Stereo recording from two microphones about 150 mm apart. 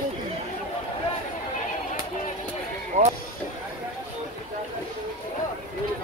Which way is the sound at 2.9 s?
50° right (ahead or behind).